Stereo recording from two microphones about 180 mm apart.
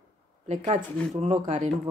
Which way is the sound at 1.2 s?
40° right (ahead or behind).